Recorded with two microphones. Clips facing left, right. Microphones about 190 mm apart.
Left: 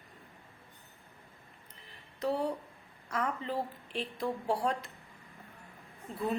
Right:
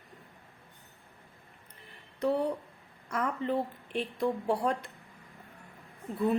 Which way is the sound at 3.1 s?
50° right (ahead or behind).